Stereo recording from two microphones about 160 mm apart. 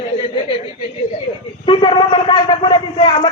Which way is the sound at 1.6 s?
30° left (ahead or behind).